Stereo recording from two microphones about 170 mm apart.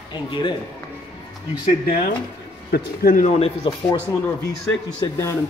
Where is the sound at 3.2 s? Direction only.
35° left (ahead or behind).